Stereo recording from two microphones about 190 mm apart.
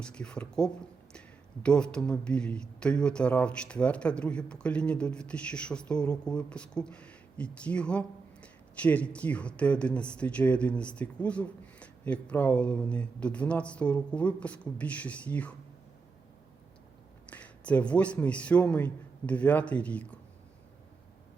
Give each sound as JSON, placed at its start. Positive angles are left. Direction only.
{"t": 0.0, "sound": "speech", "side_deg": 5}
{"t": 17.2, "sound": "speech", "side_deg": 5}